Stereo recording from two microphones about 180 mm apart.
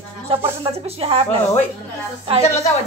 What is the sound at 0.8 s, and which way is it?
Speech, 30° right (ahead or behind).